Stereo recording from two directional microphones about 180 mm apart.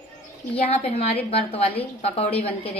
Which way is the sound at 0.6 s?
35° left (ahead or behind).